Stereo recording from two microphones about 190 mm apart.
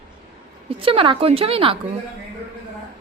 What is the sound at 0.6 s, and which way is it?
A woman's voice, 30° right (ahead or behind).